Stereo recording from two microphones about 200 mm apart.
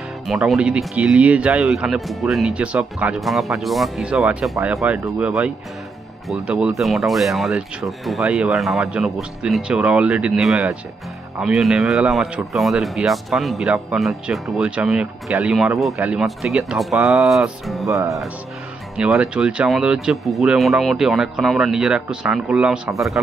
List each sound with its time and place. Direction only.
0.3 s speech: centre (ahead or behind)
6.2 s speech: centre (ahead or behind)
17.8 s music: 15° right (ahead or behind)
18.9 s speech: 5° right (ahead or behind)